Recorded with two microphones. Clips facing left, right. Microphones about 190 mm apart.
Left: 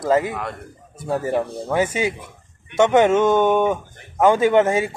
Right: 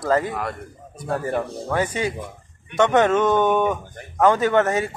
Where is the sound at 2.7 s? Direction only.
10° left (ahead or behind).